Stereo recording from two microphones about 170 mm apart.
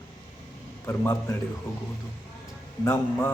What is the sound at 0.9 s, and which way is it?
Speech, 15° left (ahead or behind).